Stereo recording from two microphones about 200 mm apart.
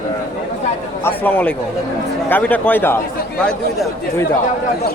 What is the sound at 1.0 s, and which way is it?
Speech, 10° left (ahead or behind).